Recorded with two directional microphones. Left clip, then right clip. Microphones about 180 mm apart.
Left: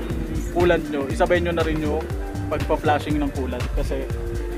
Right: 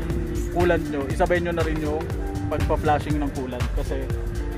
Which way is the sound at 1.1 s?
25° right (ahead or behind).